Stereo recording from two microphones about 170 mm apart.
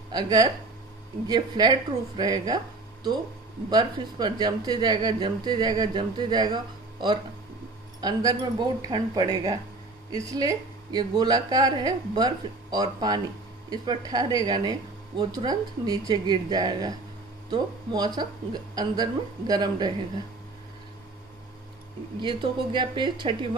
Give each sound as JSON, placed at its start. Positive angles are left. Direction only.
{"t": 0.1, "sound": "a woman's voice", "side_deg": -25}
{"t": 22.2, "sound": "a woman's voice", "side_deg": -30}